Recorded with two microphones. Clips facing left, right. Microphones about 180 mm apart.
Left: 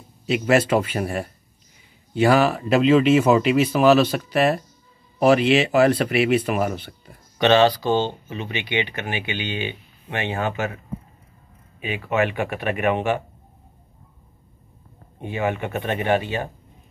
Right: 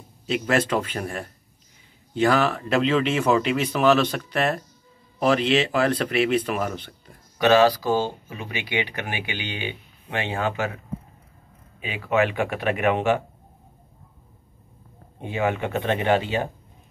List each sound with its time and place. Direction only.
0.3 s speech: 10° left (ahead or behind)
7.3 s speech: 25° left (ahead or behind)
8.5 s speech: 10° right (ahead or behind)
10.2 s speech: 15° left (ahead or behind)
11.8 s speech: 10° right (ahead or behind)
12.4 s speech: 10° left (ahead or behind)
15.2 s speech: 15° right (ahead or behind)
15.7 s speech: 15° left (ahead or behind)
16.2 s speech: 15° right (ahead or behind)